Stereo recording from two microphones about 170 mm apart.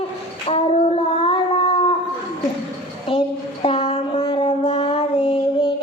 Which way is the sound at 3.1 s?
30° left (ahead or behind).